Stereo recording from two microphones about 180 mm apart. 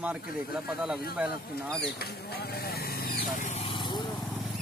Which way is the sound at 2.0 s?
60° left (ahead or behind).